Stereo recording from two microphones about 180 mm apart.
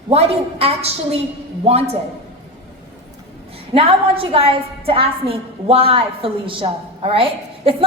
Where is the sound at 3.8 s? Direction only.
30° right (ahead or behind).